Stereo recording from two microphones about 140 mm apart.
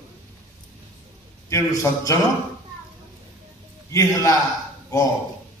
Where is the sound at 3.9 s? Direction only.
25° left (ahead or behind).